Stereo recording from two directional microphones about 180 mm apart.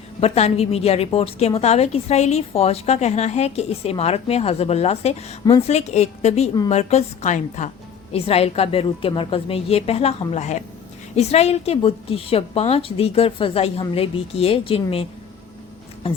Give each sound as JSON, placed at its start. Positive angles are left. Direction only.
{"t": 0.2, "sound": "a woman's voice", "side_deg": 35}